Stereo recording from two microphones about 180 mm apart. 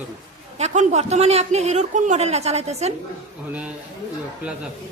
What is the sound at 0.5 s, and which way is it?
A man's voice, 40° right (ahead or behind).